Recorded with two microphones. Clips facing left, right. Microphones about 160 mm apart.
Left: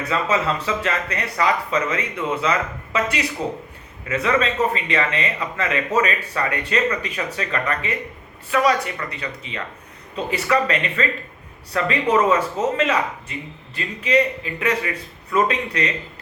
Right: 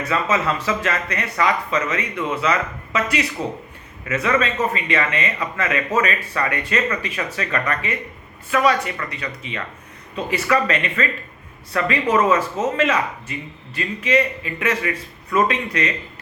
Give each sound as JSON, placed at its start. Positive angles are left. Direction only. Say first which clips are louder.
{"t": 0.1, "sound": "speech", "louder": "even", "side_deg": 30}